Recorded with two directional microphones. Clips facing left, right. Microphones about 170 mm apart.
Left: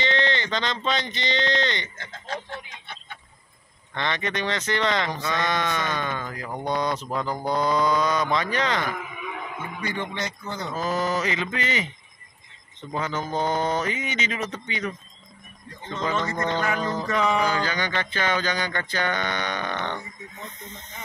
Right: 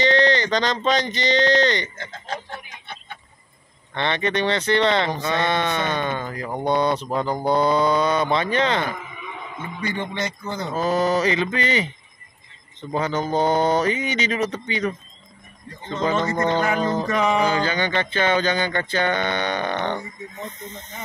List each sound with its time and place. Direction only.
0.0 s speech: 40° right (ahead or behind)
3.9 s speech: 30° right (ahead or behind)
9.2 s a sound: 5° left (ahead or behind)
10.4 s speech: 20° right (ahead or behind)
12.9 s speech: 35° right (ahead or behind)